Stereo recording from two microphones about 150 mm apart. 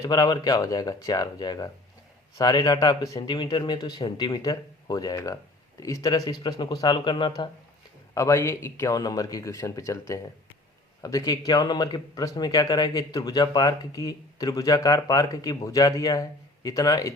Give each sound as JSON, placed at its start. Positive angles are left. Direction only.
{"t": 0.0, "sound": "speech", "side_deg": 25}
{"t": 8.1, "sound": "speech", "side_deg": 20}